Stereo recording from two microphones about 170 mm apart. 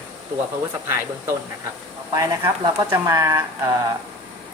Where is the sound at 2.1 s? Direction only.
15° right (ahead or behind).